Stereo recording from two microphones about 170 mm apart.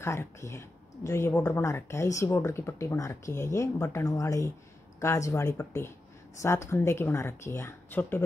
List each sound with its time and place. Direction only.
0.0 s speech: 15° left (ahead or behind)